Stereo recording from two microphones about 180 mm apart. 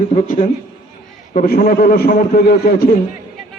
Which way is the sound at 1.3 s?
55° left (ahead or behind).